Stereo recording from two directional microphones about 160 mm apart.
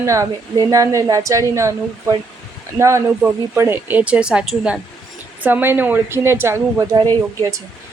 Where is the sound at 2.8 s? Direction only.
20° right (ahead or behind).